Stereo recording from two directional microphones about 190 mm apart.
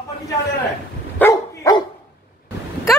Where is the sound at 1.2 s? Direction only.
15° left (ahead or behind).